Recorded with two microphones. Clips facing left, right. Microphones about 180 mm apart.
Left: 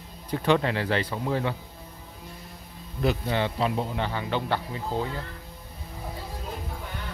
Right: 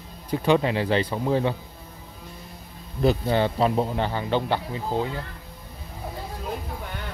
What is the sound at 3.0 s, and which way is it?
Speech, 35° right (ahead or behind).